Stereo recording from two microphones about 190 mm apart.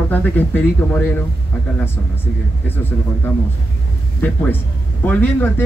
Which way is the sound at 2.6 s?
10° left (ahead or behind).